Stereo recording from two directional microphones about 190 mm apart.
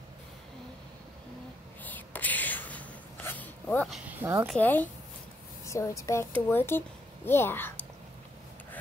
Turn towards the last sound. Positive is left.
turn(degrees=10)  # may be behind; listen again after turning